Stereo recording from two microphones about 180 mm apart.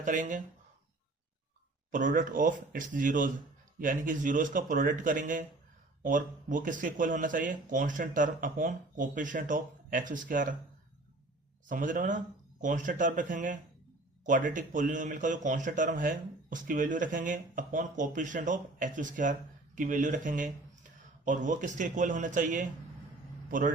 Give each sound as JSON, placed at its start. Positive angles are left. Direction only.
{"t": 0.0, "sound": "speech", "side_deg": -45}
{"t": 1.9, "sound": "speech", "side_deg": -45}
{"t": 11.7, "sound": "a man's voice", "side_deg": -45}